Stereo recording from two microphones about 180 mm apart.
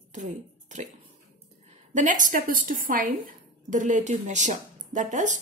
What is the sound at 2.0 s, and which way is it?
A woman's voice, 45° right (ahead or behind).